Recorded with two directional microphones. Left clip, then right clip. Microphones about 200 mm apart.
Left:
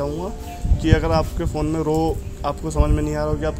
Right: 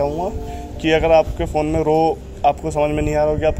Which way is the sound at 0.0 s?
35° left (ahead or behind).